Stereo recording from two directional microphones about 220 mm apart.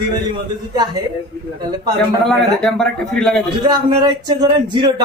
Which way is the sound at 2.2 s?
5° left (ahead or behind).